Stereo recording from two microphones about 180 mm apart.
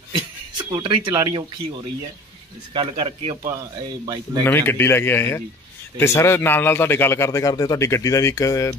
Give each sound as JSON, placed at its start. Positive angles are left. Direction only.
{"t": 0.1, "sound": "speech", "side_deg": -25}
{"t": 2.7, "sound": "a man's voice", "side_deg": -25}
{"t": 4.5, "sound": "speech", "side_deg": 10}